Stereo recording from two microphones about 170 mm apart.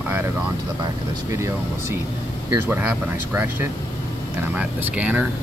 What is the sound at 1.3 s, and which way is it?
Speech, 15° right (ahead or behind).